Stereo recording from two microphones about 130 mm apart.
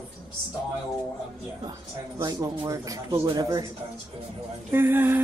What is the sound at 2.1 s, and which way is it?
Speech, 30° right (ahead or behind).